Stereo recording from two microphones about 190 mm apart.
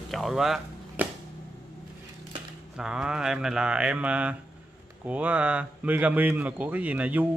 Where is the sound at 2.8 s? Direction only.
5° right (ahead or behind).